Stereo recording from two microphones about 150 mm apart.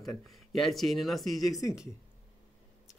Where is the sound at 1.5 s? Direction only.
25° left (ahead or behind).